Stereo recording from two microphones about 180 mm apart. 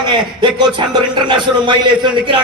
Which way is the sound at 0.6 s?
25° right (ahead or behind).